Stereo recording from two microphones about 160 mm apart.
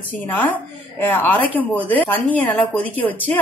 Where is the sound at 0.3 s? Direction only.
10° left (ahead or behind).